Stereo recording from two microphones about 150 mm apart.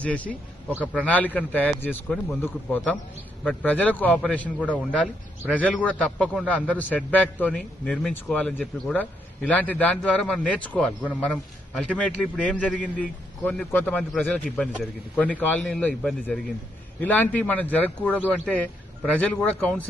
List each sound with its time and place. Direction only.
0.0 s a man's voice: 10° left (ahead or behind)